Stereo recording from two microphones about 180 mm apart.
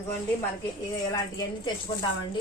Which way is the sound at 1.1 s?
25° left (ahead or behind).